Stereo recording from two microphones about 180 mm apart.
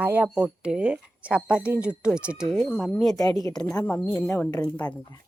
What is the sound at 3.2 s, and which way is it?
Speech, 20° left (ahead or behind).